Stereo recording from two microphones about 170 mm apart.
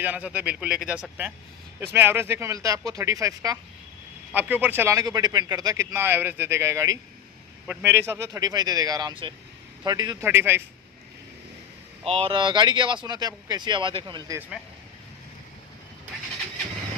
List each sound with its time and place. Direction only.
0.0 s a man's voice: 10° right (ahead or behind)
10.2 s a man's voice: 15° right (ahead or behind)
12.0 s speech: 35° right (ahead or behind)